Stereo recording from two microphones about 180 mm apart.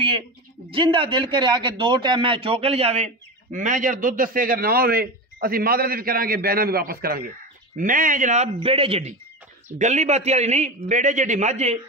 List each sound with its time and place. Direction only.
0.7 s a man's voice: 30° right (ahead or behind)
8.6 s a man's voice: 30° right (ahead or behind)